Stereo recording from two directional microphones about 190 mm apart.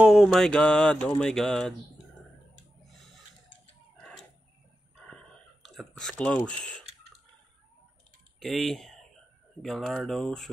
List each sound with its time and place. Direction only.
0.0 s mantra: centre (ahead or behind)
5.1 s whispering: centre (ahead or behind)
8.4 s speech: centre (ahead or behind)
9.6 s mantra: centre (ahead or behind)